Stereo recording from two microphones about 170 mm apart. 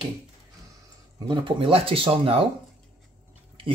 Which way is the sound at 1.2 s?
30° right (ahead or behind).